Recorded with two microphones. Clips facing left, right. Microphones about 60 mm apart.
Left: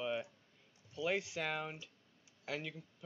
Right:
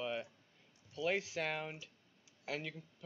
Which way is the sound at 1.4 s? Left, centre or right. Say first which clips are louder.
Even; centre.